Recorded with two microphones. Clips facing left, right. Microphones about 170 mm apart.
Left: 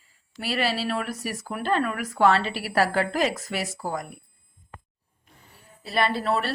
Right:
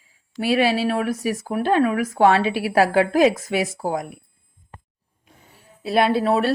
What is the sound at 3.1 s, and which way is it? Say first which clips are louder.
Speech: right 8 dB; 50° right (ahead or behind).